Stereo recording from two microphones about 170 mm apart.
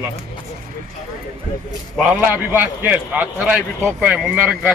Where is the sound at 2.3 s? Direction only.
10° right (ahead or behind).